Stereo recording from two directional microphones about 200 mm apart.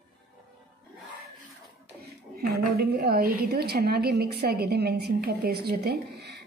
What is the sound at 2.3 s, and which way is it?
A woman's voice, 50° right (ahead or behind).